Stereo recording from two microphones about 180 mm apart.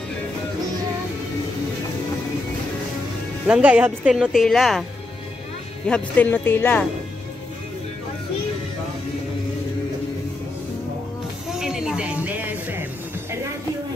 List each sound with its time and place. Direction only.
3.4 s speech: 5° right (ahead or behind)
5.9 s speech: 5° left (ahead or behind)
11.5 s music: 5° right (ahead or behind)